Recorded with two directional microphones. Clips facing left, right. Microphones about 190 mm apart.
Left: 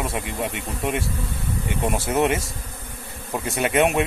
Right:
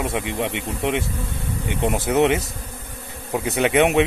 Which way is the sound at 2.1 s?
20° right (ahead or behind).